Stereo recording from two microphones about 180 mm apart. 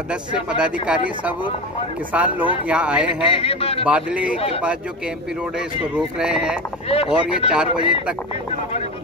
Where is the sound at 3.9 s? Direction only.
5° right (ahead or behind).